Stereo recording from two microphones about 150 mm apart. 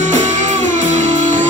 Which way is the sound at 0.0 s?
55° right (ahead or behind).